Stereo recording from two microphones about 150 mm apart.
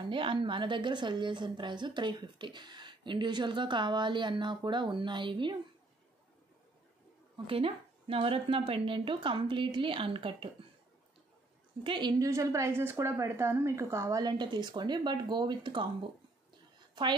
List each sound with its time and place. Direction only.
0.0 s a woman's voice: 35° right (ahead or behind)
7.4 s a woman's voice: 40° right (ahead or behind)
11.8 s a woman's voice: 30° right (ahead or behind)